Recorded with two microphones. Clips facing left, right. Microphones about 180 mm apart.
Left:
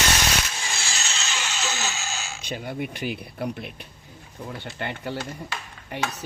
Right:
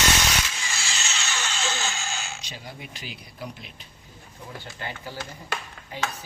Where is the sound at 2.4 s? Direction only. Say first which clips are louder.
Left 10 dB; 55° left (ahead or behind).